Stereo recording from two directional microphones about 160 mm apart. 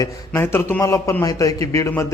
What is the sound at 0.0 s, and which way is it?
A man's voice, 15° left (ahead or behind).